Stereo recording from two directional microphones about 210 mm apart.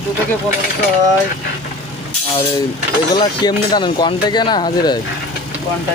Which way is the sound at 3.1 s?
20° left (ahead or behind).